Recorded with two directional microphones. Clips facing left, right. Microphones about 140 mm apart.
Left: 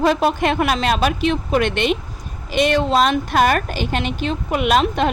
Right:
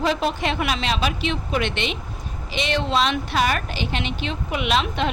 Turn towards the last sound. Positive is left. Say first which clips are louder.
# left 5 dB
turn(degrees=45)  # may be behind; listen again after turning